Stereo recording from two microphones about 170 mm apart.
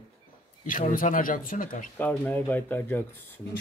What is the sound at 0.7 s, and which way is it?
Speech, 50° left (ahead or behind).